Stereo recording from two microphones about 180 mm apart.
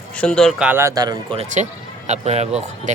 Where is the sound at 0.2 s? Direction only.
5° left (ahead or behind).